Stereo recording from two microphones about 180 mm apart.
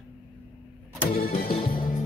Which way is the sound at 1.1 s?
55° left (ahead or behind).